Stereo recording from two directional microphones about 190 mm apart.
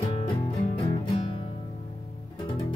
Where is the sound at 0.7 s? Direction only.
30° left (ahead or behind).